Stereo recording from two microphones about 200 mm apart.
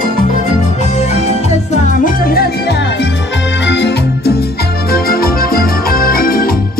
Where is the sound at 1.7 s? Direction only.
40° left (ahead or behind).